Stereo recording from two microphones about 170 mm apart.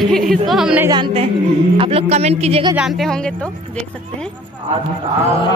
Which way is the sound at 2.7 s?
Centre (ahead or behind).